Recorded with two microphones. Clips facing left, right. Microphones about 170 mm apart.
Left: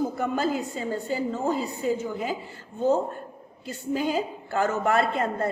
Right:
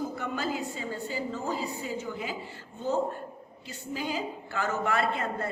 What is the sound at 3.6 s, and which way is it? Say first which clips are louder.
A woman's voice: left 8 dB; 50° left (ahead or behind).